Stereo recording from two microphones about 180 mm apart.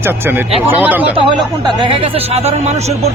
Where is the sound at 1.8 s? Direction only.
30° right (ahead or behind).